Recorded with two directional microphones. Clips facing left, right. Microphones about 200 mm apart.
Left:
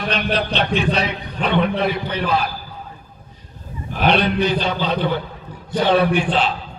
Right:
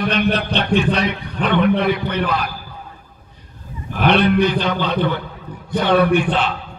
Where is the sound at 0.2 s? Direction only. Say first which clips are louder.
Right 2 dB; 50° right (ahead or behind).